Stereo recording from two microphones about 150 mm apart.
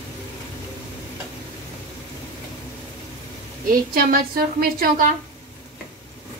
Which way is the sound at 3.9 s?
80° right.